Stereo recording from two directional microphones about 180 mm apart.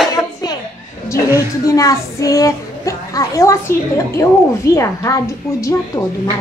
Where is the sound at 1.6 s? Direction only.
20° left (ahead or behind).